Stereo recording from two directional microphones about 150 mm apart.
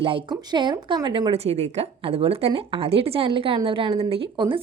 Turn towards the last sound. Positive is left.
turn(degrees=-35)  # may be behind; listen again after turning